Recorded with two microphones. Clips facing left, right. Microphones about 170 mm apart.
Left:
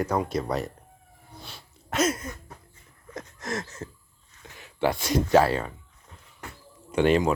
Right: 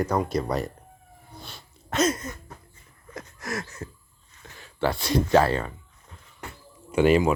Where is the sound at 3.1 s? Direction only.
25° left (ahead or behind).